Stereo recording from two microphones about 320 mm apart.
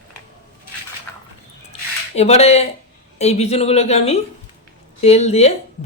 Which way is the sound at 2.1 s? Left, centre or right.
Centre.